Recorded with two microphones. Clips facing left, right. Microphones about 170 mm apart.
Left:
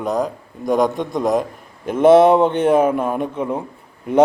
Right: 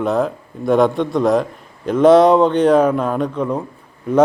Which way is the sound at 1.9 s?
55° left (ahead or behind).